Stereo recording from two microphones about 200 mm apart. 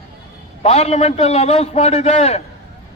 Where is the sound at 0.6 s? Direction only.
30° left (ahead or behind).